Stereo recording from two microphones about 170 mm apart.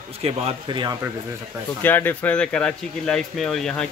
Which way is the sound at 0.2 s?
35° right (ahead or behind).